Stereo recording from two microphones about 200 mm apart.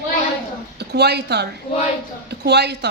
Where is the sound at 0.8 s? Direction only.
55° right (ahead or behind).